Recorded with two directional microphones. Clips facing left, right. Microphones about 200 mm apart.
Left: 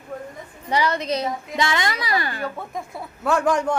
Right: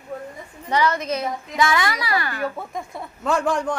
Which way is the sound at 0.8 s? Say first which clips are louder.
Even; 35° left (ahead or behind).